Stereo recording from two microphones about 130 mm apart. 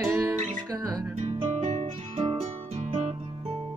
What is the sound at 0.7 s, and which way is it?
Music, 30° right (ahead or behind).